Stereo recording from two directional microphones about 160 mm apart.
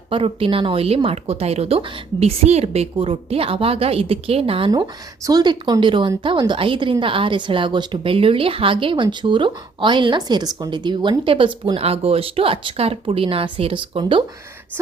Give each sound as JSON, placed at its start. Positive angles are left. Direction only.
{"t": 0.1, "sound": "speech", "side_deg": -35}
{"t": 4.7, "sound": "speech", "side_deg": -25}